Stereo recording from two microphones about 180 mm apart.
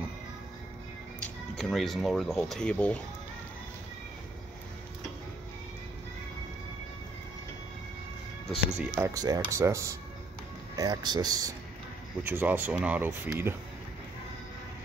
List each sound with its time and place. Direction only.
1.6 s speech: centre (ahead or behind)
8.5 s speech: 5° right (ahead or behind)
9.0 s speech: 20° right (ahead or behind)